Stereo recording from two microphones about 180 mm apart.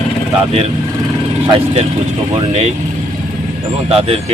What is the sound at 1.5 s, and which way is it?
Speech, 35° right (ahead or behind).